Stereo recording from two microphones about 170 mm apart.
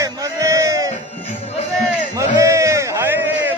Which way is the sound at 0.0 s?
20° right (ahead or behind).